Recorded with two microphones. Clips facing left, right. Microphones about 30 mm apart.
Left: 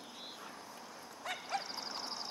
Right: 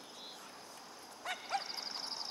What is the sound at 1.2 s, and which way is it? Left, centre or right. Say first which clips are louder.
Bow-wow: right 1 dB; centre.